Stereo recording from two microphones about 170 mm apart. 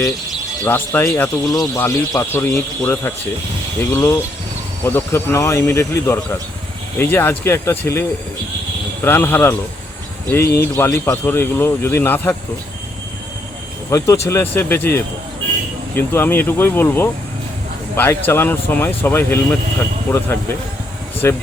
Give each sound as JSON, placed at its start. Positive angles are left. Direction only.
{"t": 0.6, "sound": "a man's voice", "side_deg": 10}
{"t": 13.9, "sound": "a man's voice", "side_deg": 15}
{"t": 21.2, "sound": "a man's voice", "side_deg": 15}